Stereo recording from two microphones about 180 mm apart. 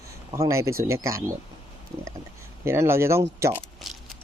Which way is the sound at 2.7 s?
15° right (ahead or behind).